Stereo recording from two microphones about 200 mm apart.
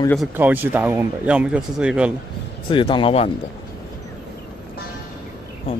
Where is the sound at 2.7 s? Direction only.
25° left (ahead or behind).